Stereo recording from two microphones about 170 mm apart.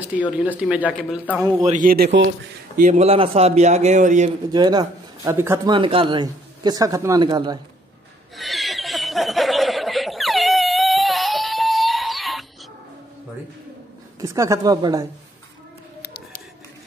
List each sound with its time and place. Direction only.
0.1 s speech: 10° right (ahead or behind)
1.6 s a man's voice: 50° right (ahead or behind)
2.8 s speech: 40° right (ahead or behind)
4.5 s a man's voice: 25° right (ahead or behind)
5.7 s a woman's voice: 30° right (ahead or behind)
8.4 s snicker: centre (ahead or behind)
14.2 s a woman's voice: 20° right (ahead or behind)